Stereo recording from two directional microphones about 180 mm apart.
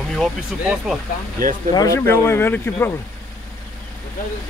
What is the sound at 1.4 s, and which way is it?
Speech, 50° right (ahead or behind).